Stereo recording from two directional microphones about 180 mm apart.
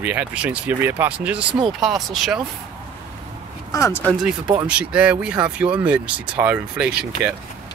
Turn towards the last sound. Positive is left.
turn(degrees=-5)  # may be behind; listen again after turning